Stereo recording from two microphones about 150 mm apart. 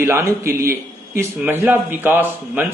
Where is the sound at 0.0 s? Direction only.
20° right (ahead or behind).